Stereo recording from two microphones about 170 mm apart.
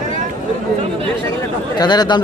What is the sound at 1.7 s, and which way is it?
Speech, 25° left (ahead or behind).